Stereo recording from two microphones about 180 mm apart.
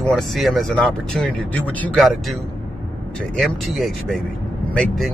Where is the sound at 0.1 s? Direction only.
Centre (ahead or behind).